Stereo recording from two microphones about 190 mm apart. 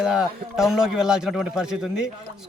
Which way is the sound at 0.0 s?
5° right (ahead or behind).